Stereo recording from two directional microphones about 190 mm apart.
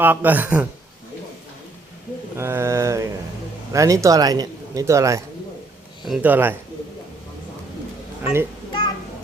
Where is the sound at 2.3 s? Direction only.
15° right (ahead or behind).